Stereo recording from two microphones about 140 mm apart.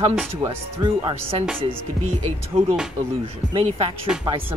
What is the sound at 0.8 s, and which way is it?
Speech, 40° right (ahead or behind).